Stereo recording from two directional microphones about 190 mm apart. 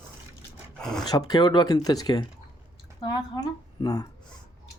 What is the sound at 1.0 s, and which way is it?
Speech, 20° left (ahead or behind).